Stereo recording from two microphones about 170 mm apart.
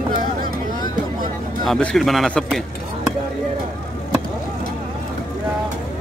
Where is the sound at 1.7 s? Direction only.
5° left (ahead or behind).